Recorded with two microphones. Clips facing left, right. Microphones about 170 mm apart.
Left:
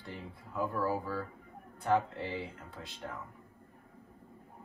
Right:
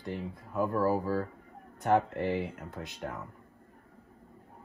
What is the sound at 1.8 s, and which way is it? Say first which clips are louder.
Speech: right 4 dB; 60° right (ahead or behind).